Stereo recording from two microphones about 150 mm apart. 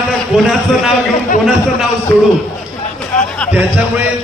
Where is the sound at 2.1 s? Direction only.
15° left (ahead or behind).